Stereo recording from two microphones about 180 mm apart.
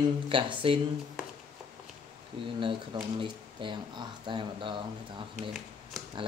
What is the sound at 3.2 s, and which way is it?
Speech, 25° right (ahead or behind).